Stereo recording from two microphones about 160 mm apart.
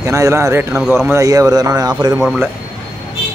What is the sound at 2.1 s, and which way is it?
Speech, centre (ahead or behind).